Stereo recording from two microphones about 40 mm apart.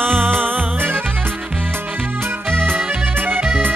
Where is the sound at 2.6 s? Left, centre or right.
Right.